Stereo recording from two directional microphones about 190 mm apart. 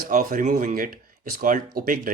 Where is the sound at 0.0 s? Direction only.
45° right (ahead or behind).